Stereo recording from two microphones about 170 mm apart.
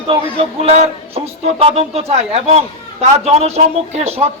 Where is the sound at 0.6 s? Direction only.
35° right (ahead or behind).